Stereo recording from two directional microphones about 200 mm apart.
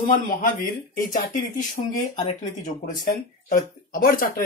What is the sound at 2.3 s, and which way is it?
Speech, 35° left (ahead or behind).